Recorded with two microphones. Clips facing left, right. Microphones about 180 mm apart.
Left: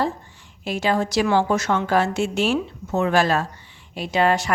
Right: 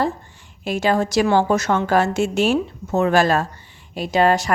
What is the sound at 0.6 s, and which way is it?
A woman's voice, 45° right (ahead or behind).